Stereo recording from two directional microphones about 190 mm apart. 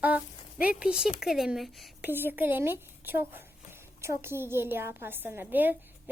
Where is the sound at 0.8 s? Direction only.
5° right (ahead or behind).